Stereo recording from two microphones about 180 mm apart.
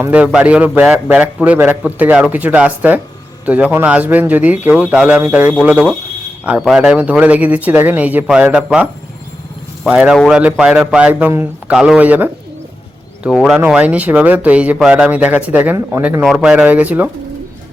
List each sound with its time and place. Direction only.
0.0 s speech: 10° right (ahead or behind)